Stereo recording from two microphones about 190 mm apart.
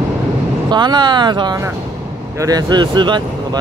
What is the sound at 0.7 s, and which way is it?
Speech, 25° right (ahead or behind).